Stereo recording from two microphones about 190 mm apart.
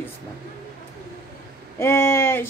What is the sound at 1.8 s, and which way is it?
Speech, 15° left (ahead or behind).